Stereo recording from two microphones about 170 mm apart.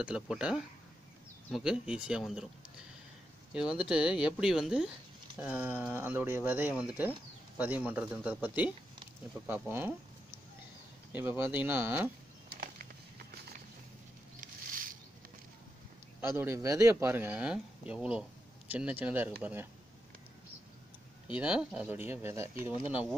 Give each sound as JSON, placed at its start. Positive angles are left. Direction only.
{"t": 0.0, "sound": "speech", "side_deg": -5}
{"t": 3.7, "sound": "speech", "side_deg": -5}
{"t": 11.1, "sound": "speech", "side_deg": -10}
{"t": 12.4, "sound": "a sound", "side_deg": -65}
{"t": 14.4, "sound": "mouse", "side_deg": -55}
{"t": 16.2, "sound": "speech", "side_deg": -15}
{"t": 21.4, "sound": "speech", "side_deg": -5}